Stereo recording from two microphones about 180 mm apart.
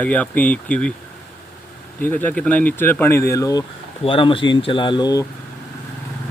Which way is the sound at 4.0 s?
30° left (ahead or behind).